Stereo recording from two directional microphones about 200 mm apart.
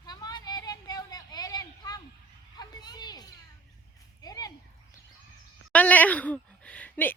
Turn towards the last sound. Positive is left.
turn(degrees=10)  # may be behind; listen again after turning